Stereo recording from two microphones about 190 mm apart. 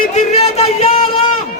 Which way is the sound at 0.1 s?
35° left (ahead or behind).